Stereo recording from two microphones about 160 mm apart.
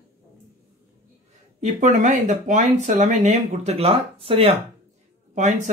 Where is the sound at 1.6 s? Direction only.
50° right (ahead or behind).